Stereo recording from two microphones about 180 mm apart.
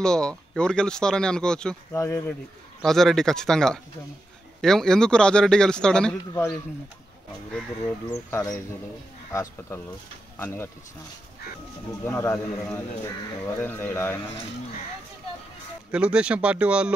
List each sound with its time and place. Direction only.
0.0 s speech: 5° left (ahead or behind)
2.0 s speech: 15° left (ahead or behind)
2.8 s speech: centre (ahead or behind)
8.1 s speech: 15° left (ahead or behind)
12.0 s speech: 10° left (ahead or behind)
15.9 s speech: 5° right (ahead or behind)